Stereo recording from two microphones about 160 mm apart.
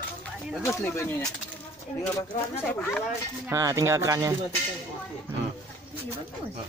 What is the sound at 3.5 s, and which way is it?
Speech, 20° right (ahead or behind).